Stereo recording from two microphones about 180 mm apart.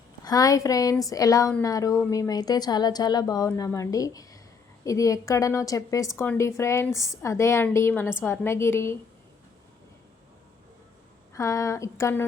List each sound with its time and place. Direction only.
0.3 s a woman's voice: 20° left (ahead or behind)
11.3 s a woman's voice: 15° left (ahead or behind)